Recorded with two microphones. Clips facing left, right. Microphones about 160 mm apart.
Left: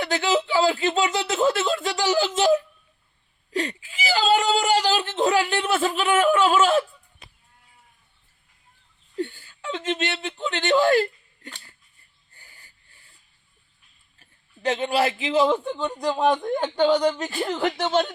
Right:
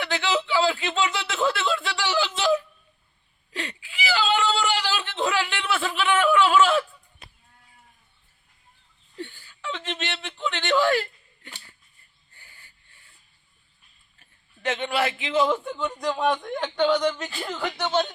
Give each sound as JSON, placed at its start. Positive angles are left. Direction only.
{"t": 0.0, "sound": "speech", "side_deg": 40}
{"t": 3.5, "sound": "whimper", "side_deg": 40}
{"t": 9.1, "sound": "whimper", "side_deg": 45}
{"t": 12.3, "sound": "snort", "side_deg": 40}
{"t": 14.6, "sound": "speech", "side_deg": 35}
{"t": 16.0, "sound": "speech", "side_deg": 40}